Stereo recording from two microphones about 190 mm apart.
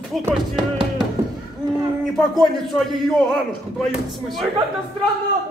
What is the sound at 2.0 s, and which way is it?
A man's voice, centre (ahead or behind).